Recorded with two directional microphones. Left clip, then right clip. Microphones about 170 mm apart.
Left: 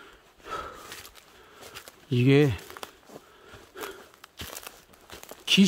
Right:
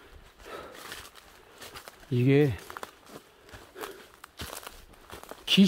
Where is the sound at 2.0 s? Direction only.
30° left (ahead or behind).